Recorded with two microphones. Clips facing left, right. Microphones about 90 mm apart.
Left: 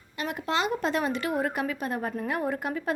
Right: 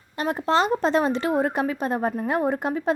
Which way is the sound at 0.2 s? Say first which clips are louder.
Right 7 dB; 35° right (ahead or behind).